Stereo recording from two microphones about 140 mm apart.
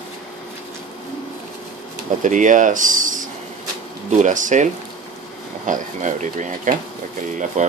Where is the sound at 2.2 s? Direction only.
65° right (ahead or behind).